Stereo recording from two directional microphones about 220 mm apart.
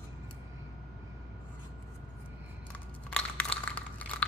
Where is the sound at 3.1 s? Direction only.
5° left (ahead or behind).